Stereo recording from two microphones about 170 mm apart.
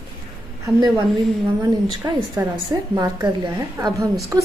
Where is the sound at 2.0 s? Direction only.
20° right (ahead or behind).